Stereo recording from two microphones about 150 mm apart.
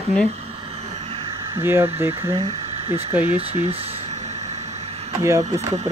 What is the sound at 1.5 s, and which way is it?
Speech, 15° right (ahead or behind).